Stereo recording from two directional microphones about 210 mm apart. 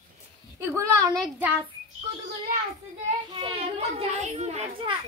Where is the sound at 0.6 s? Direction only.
15° right (ahead or behind).